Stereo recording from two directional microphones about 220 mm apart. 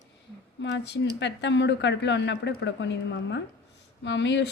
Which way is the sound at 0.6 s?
55° left (ahead or behind).